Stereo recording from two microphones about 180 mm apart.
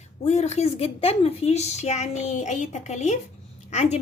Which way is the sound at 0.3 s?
40° left (ahead or behind).